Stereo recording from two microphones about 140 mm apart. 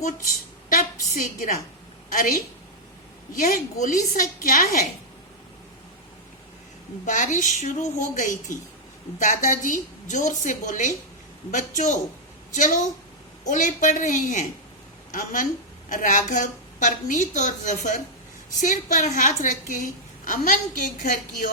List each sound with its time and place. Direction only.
0.7 s a woman's voice: 75° left (ahead or behind)
3.4 s a woman's voice: 65° left (ahead or behind)
7.0 s a woman's voice: 65° left (ahead or behind)